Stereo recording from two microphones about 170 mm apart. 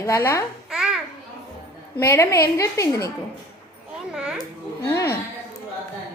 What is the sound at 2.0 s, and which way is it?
A woman's voice, 15° left (ahead or behind).